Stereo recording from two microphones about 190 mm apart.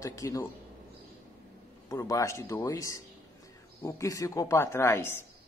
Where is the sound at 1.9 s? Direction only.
15° left (ahead or behind).